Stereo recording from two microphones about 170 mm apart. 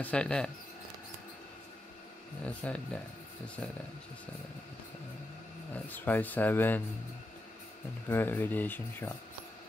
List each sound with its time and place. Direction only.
0.0 s speech: 5° left (ahead or behind)
2.4 s speech: 5° left (ahead or behind)
5.9 s speech: 10° left (ahead or behind)
8.1 s speech: 10° left (ahead or behind)